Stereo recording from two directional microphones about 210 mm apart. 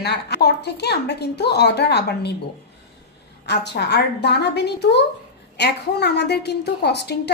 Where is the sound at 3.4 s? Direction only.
55° left (ahead or behind).